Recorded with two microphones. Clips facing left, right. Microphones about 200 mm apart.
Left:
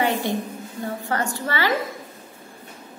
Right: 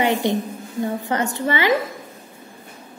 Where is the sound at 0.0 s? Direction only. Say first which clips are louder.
Right 3 dB; 20° right (ahead or behind).